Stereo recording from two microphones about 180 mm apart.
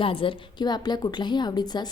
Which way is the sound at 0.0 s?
30° left (ahead or behind).